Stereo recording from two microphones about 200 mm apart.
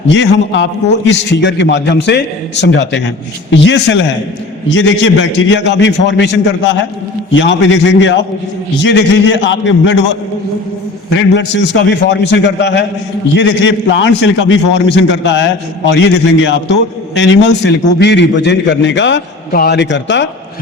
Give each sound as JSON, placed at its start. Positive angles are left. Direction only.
{"t": 0.1, "sound": "a man's voice", "side_deg": 60}
{"t": 11.2, "sound": "a man's voice", "side_deg": 65}